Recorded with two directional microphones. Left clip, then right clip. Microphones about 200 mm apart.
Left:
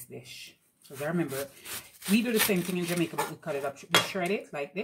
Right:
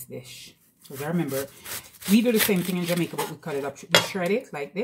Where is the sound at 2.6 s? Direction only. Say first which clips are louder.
Right 4 dB; 10° right (ahead or behind).